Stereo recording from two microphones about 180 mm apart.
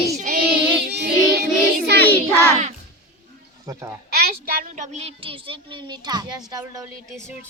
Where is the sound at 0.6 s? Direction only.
70° right (ahead or behind).